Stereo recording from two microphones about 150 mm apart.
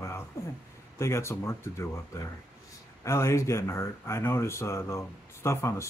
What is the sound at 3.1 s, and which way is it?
Speech, 20° left (ahead or behind).